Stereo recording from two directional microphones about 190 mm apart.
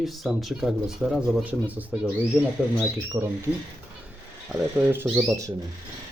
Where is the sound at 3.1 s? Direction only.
15° right (ahead or behind).